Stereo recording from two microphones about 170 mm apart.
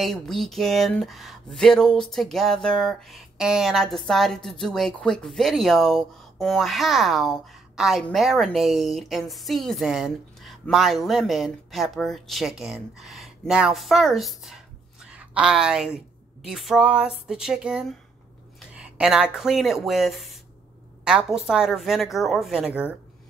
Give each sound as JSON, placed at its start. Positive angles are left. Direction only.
{"t": 0.0, "sound": "a woman's voice", "side_deg": 0}